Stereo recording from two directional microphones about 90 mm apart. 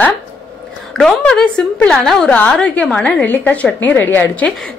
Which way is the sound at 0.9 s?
5° left (ahead or behind).